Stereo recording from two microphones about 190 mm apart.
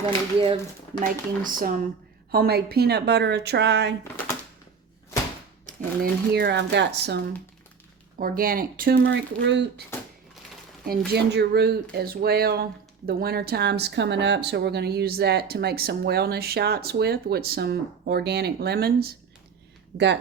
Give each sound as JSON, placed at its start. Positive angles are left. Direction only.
{"t": 0.0, "sound": "speech", "side_deg": -25}
{"t": 1.0, "sound": "speech", "side_deg": -45}
{"t": 5.6, "sound": "speech", "side_deg": -55}
{"t": 8.2, "sound": "speech", "side_deg": -50}
{"t": 9.1, "sound": "speech", "side_deg": -65}
{"t": 10.8, "sound": "speech", "side_deg": -60}